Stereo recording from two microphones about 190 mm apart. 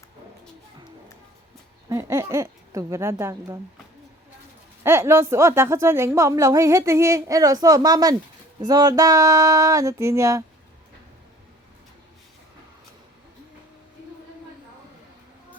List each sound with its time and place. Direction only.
1.9 s a woman's voice: 15° right (ahead or behind)
4.8 s a woman's voice: 15° right (ahead or behind)